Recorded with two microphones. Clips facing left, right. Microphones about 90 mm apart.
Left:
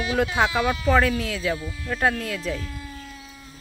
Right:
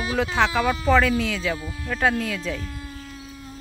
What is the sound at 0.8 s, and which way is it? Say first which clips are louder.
Speech: right 2 dB; centre (ahead or behind).